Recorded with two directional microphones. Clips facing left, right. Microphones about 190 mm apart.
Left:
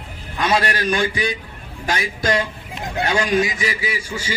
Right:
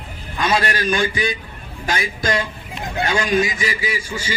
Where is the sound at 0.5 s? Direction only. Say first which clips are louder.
Even; 60° left (ahead or behind).